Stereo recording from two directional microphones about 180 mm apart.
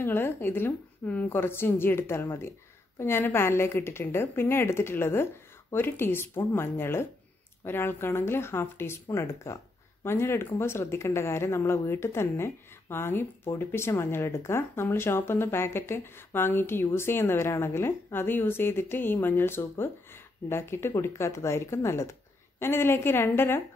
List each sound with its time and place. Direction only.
0.0 s speech: 10° left (ahead or behind)